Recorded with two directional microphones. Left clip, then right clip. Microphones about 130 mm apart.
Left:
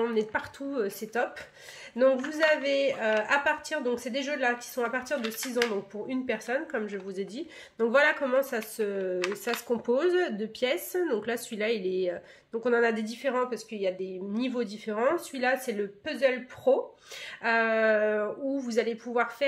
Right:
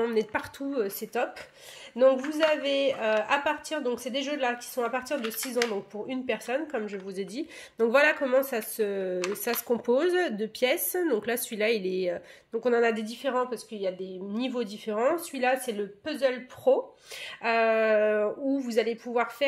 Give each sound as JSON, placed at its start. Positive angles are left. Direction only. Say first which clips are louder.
{"t": 0.0, "sound": "a woman's voice", "louder": "right 1 dB", "side_deg": -35}
{"t": 12.5, "sound": "a woman's voice", "louder": "right 1 dB", "side_deg": -30}
{"t": 17.2, "sound": "speech", "louder": "right 1 dB", "side_deg": -30}